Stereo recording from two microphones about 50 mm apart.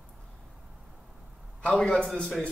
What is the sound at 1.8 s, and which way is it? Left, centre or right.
Speech, left.